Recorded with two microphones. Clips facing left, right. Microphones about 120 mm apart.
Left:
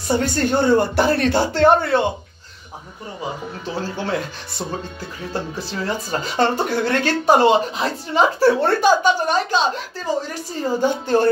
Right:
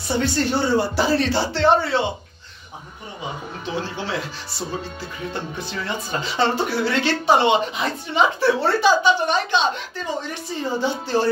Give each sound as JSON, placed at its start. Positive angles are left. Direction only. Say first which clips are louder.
{"t": 0.1, "sound": "speech", "louder": "left 2 dB", "side_deg": 45}
{"t": 3.7, "sound": "speech", "louder": "left 3 dB", "side_deg": 45}
{"t": 5.3, "sound": "speech", "louder": "left 6 dB", "side_deg": 35}
{"t": 10.6, "sound": "speech", "louder": "left 4 dB", "side_deg": 45}